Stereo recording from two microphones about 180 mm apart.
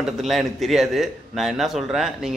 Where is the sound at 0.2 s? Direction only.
Centre (ahead or behind).